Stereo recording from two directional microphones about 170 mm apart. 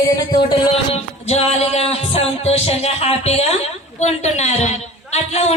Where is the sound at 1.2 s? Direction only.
40° left (ahead or behind).